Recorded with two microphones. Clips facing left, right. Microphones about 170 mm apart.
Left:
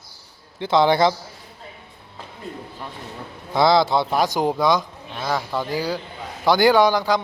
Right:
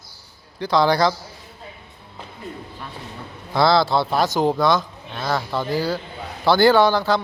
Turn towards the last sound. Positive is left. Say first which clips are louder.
# even
turn(degrees=15)  # may be behind; listen again after turning